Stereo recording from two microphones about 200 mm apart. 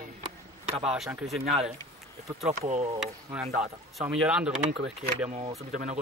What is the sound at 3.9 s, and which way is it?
Speech, 5° right (ahead or behind).